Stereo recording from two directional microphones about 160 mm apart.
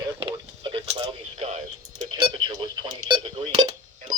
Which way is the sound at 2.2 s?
30° right (ahead or behind).